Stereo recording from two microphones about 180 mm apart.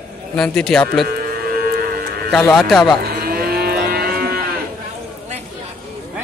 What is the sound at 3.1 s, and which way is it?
Livestock, 55° right (ahead or behind).